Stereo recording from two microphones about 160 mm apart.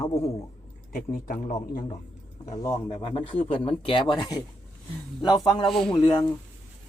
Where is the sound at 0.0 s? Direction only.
40° left (ahead or behind).